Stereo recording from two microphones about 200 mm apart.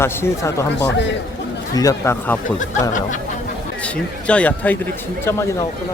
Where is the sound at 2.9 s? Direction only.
40° left (ahead or behind).